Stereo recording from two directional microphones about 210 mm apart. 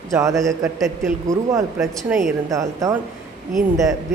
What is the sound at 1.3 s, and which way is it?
Speech, 15° right (ahead or behind).